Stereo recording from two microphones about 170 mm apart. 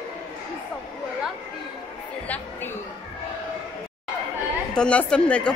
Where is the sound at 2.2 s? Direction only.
10° left (ahead or behind).